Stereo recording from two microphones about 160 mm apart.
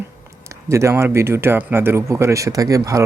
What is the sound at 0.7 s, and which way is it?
Speech, 15° right (ahead or behind).